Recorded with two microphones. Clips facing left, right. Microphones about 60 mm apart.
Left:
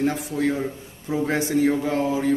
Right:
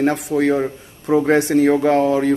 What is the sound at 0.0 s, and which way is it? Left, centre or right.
Speech, right.